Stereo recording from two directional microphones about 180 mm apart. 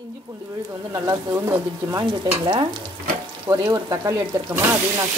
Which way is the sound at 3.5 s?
20° right (ahead or behind).